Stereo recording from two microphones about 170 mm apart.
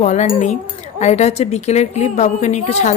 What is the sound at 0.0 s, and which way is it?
A woman's voice, 45° left (ahead or behind).